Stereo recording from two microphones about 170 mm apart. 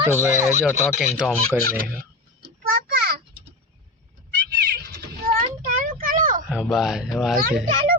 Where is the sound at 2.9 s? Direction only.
60° right (ahead or behind).